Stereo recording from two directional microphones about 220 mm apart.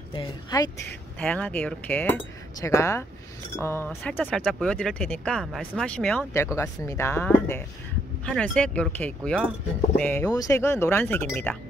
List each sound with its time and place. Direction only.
0.1 s speech: 20° left (ahead or behind)
1.2 s speech: 5° left (ahead or behind)